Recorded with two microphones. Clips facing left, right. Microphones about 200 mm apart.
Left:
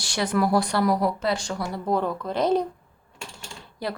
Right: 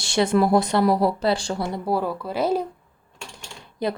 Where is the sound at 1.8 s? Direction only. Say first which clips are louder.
Left 1 dB; 5° right (ahead or behind).